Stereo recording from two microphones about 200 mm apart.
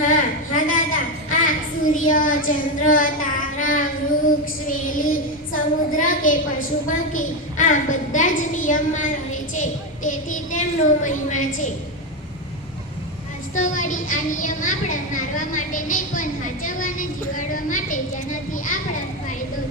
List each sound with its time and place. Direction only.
0.0 s a sound: 40° left (ahead or behind)
2.0 s child singing: 40° left (ahead or behind)
2.5 s a child's voice: 40° left (ahead or behind)
13.6 s a woman's voice: 40° left (ahead or behind)